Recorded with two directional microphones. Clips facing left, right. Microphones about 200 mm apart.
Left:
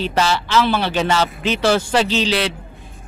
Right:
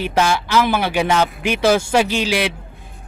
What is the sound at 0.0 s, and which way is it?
Speech, 10° right (ahead or behind).